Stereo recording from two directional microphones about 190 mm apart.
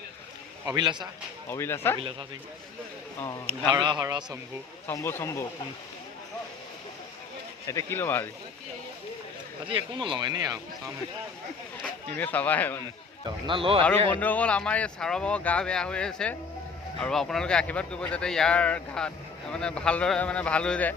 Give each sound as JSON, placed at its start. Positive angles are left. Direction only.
{"t": 0.6, "sound": "speech", "side_deg": -20}
{"t": 1.5, "sound": "speech", "side_deg": 15}
{"t": 3.2, "sound": "speech", "side_deg": 10}
{"t": 3.7, "sound": "speech", "side_deg": -25}
{"t": 4.9, "sound": "speech", "side_deg": 10}
{"t": 7.7, "sound": "speech", "side_deg": 15}
{"t": 9.6, "sound": "speech", "side_deg": -25}
{"t": 11.8, "sound": "speech", "side_deg": 10}
{"t": 13.5, "sound": "speech", "side_deg": -30}
{"t": 14.1, "sound": "speech", "side_deg": 10}